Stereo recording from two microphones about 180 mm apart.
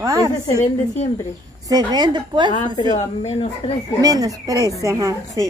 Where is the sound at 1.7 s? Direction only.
20° right (ahead or behind).